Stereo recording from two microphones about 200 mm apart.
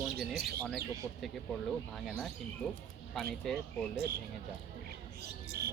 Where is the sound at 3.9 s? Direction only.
50° right (ahead or behind).